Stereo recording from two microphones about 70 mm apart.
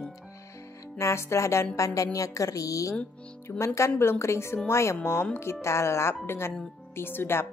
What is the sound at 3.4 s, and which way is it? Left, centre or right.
A woman's voice, left.